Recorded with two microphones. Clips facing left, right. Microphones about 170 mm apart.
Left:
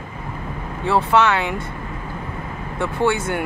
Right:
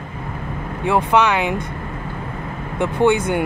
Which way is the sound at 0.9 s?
15° right (ahead or behind).